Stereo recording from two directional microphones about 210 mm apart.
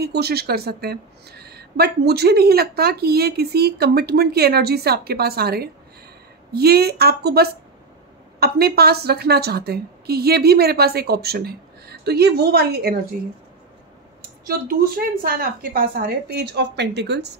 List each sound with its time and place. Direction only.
0.0 s a woman's voice: 50° right (ahead or behind)
14.4 s a woman's voice: 45° right (ahead or behind)